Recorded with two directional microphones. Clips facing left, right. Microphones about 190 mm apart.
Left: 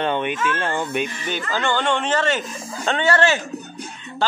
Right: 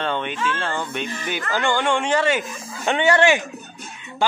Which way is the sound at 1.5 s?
15° right (ahead or behind).